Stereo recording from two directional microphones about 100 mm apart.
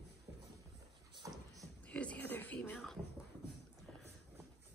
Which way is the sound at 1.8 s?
15° left (ahead or behind).